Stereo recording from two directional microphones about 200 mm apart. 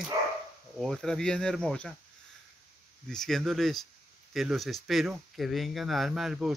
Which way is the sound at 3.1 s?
Centre (ahead or behind).